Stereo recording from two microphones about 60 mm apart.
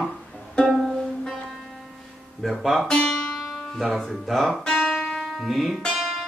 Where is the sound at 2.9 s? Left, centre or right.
Centre.